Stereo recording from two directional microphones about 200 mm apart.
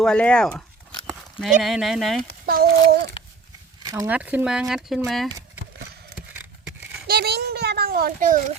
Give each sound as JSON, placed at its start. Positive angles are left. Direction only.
{"t": 0.0, "sound": "speech", "side_deg": 5}
{"t": 2.5, "sound": "a child's voice", "side_deg": -50}
{"t": 3.8, "sound": "speech", "side_deg": -15}
{"t": 7.1, "sound": "a sound", "side_deg": -50}